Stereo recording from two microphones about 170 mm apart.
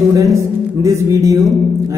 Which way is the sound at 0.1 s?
20° right (ahead or behind).